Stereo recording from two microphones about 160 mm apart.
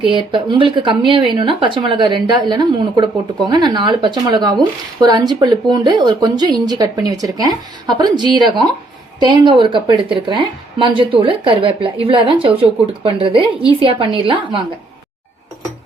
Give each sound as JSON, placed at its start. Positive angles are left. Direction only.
{"t": 0.0, "sound": "a woman's voice", "side_deg": -30}